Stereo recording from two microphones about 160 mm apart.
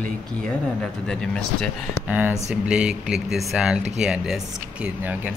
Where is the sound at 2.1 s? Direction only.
10° right (ahead or behind).